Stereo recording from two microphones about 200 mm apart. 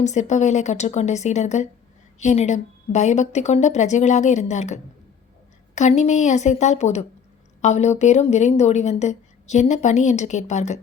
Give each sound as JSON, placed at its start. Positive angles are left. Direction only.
{"t": 0.0, "sound": "speech", "side_deg": 35}